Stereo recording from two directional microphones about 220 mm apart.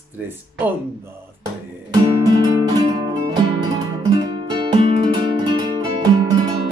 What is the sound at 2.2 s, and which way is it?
Music, 15° right (ahead or behind).